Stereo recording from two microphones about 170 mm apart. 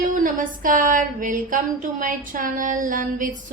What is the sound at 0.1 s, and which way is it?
A woman's voice, 50° right (ahead or behind).